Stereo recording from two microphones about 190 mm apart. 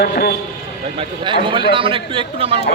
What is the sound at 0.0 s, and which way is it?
Speech, 55° left (ahead or behind).